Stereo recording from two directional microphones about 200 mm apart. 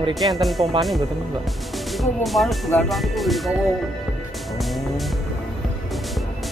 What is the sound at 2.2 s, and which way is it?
Speech, centre (ahead or behind).